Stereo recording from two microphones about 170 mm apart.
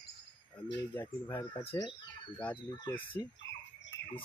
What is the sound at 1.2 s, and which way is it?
Speech, 10° left (ahead or behind).